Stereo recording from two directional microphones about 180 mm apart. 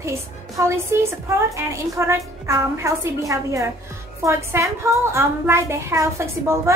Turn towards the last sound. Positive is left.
turn(degrees=-15)  # may be behind; listen again after turning